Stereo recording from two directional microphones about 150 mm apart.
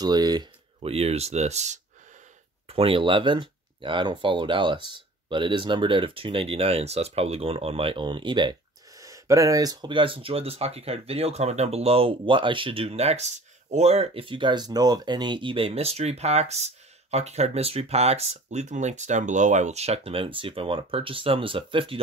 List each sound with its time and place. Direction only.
0.0 s speech: 25° right (ahead or behind)
0.7 s speech: 45° right (ahead or behind)
2.7 s speech: 40° right (ahead or behind)